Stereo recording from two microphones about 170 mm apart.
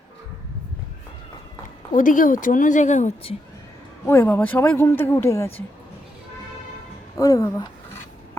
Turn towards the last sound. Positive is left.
turn(degrees=20)  # may be behind; listen again after turning